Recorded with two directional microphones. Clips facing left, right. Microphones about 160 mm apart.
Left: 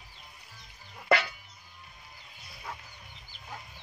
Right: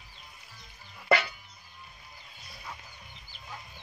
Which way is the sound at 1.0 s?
5° right (ahead or behind).